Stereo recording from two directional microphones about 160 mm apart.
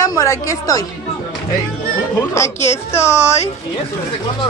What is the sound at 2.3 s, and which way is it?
Speech, 20° left (ahead or behind).